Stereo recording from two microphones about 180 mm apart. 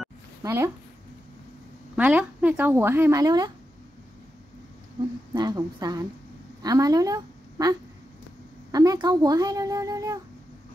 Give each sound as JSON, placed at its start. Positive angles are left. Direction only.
{"t": 0.4, "sound": "speech", "side_deg": -20}
{"t": 2.0, "sound": "speech", "side_deg": -10}
{"t": 5.3, "sound": "a woman's voice", "side_deg": -25}
{"t": 8.7, "sound": "a woman's voice", "side_deg": -20}